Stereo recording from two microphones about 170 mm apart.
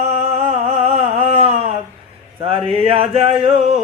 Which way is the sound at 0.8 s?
40° right (ahead or behind).